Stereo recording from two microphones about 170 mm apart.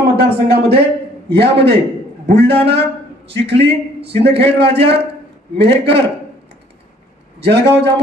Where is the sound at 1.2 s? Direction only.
80° right.